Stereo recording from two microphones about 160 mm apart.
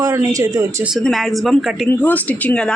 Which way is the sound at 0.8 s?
Centre (ahead or behind).